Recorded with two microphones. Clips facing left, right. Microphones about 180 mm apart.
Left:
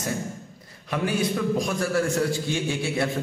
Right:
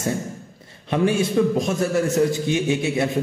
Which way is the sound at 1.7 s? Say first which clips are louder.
Right 3 dB; 20° right (ahead or behind).